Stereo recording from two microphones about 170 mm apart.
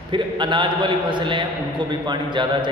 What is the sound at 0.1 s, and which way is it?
A man's voice, 25° right (ahead or behind).